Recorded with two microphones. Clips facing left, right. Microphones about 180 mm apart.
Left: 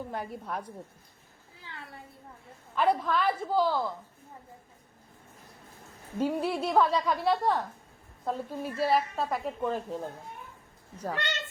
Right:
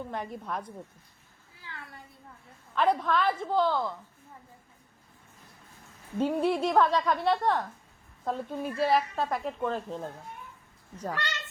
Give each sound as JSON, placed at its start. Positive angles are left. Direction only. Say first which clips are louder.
{"t": 0.1, "sound": "a woman's voice", "louder": "right 1 dB", "side_deg": 5}
{"t": 1.7, "sound": "a sound", "louder": "even", "side_deg": 20}
{"t": 2.7, "sound": "a woman's voice", "louder": "right 1 dB", "side_deg": 10}
{"t": 6.1, "sound": "a woman's voice", "louder": "right 2 dB", "side_deg": 5}
{"t": 11.1, "sound": "speech", "louder": "left 2 dB", "side_deg": 25}